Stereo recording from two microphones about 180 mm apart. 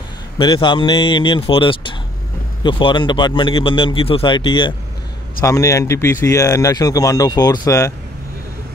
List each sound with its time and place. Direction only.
0.4 s speech: 25° left (ahead or behind)